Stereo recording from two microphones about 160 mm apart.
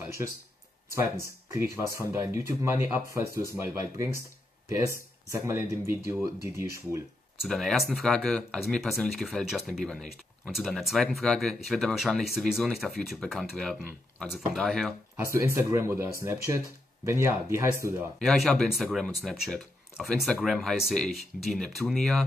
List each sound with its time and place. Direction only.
0.0 s a sound: 15° right (ahead or behind)
1.5 s speech: 20° right (ahead or behind)
7.4 s speech: centre (ahead or behind)
15.1 s speech: 20° right (ahead or behind)
18.2 s speech: centre (ahead or behind)